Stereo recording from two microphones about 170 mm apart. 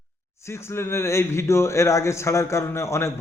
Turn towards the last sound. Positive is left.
turn(degrees=15)  # may be behind; listen again after turning